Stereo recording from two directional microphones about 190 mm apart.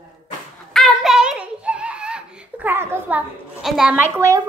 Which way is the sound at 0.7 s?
Centre (ahead or behind).